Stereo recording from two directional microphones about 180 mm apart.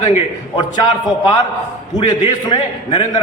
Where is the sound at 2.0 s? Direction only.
25° left (ahead or behind).